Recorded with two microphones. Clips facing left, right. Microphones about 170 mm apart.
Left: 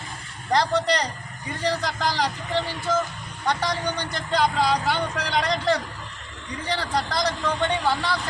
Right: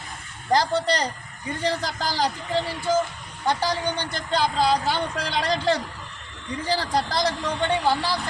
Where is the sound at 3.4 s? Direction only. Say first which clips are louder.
Right 1 dB; 30° right (ahead or behind).